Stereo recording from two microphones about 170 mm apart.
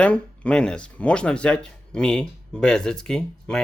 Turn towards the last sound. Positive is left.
turn(degrees=5)  # may be behind; listen again after turning